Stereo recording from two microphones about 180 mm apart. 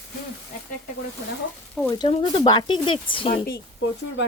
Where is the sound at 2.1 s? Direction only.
30° left (ahead or behind).